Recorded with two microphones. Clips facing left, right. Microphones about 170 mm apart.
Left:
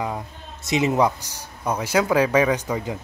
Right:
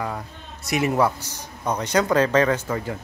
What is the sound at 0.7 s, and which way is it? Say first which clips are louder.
Speech: left 1 dB; 20° left (ahead or behind).